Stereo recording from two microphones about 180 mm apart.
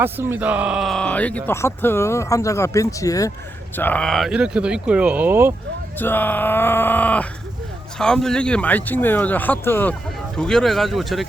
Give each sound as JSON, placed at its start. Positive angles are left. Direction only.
{"t": 0.0, "sound": "speech", "side_deg": -10}
{"t": 6.0, "sound": "speech", "side_deg": 10}